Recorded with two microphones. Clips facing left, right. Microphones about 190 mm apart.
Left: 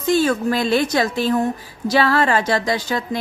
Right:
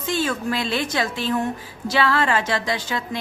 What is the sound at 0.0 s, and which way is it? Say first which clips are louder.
Speech: left 7 dB; 40° left (ahead or behind).